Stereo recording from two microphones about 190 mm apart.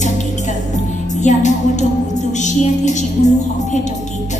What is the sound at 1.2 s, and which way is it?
A woman's voice, 40° left (ahead or behind).